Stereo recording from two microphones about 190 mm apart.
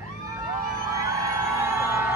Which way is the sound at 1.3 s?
15° right (ahead or behind).